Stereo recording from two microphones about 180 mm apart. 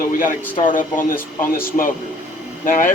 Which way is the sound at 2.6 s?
50° left (ahead or behind).